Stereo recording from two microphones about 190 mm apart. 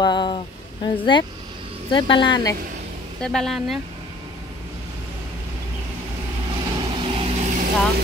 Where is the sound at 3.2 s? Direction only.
Centre (ahead or behind).